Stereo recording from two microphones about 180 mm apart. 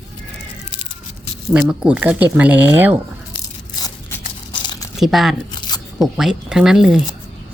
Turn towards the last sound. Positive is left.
turn(degrees=-5)  # may be behind; listen again after turning